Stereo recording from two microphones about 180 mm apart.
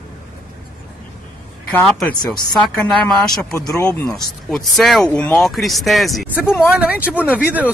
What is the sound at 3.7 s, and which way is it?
Speech, 15° left (ahead or behind).